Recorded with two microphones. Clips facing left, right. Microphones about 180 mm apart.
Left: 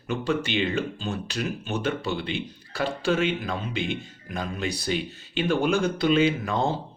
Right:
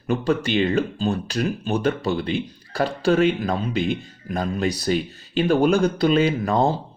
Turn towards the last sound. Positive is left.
turn(degrees=-40)  # may be behind; listen again after turning